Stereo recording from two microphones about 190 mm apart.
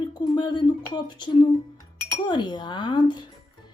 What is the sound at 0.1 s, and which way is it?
Speech, 25° left (ahead or behind).